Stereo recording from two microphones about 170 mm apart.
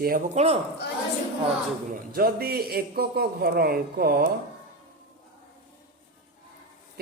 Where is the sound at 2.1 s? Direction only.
65° right (ahead or behind).